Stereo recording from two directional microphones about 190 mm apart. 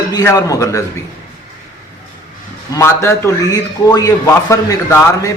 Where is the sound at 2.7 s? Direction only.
15° left (ahead or behind).